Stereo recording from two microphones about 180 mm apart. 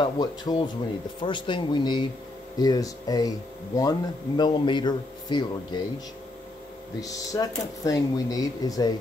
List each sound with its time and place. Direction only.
0.0 s speech: 20° left (ahead or behind)
7.0 s speech: 20° left (ahead or behind)